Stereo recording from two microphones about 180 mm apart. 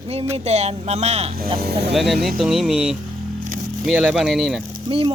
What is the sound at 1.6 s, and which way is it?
Speech, 65° right (ahead or behind).